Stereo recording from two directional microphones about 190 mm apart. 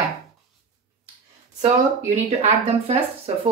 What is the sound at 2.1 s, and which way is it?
Speech, 35° right (ahead or behind).